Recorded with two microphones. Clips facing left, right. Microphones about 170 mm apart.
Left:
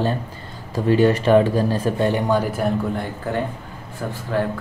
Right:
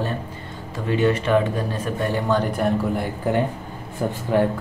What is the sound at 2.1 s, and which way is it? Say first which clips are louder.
Speech: left 2 dB; 10° left (ahead or behind).